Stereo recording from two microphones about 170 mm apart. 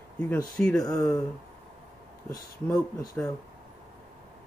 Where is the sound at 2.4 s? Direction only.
20° left (ahead or behind).